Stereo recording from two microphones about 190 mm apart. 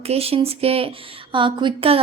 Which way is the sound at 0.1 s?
30° right (ahead or behind).